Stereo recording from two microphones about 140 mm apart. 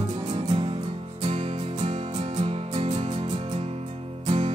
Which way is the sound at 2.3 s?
50° right (ahead or behind).